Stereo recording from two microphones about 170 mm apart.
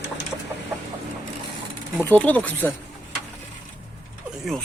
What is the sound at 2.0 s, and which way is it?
Speech, 10° left (ahead or behind).